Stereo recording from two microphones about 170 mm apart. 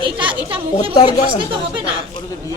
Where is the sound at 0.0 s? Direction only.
30° right (ahead or behind).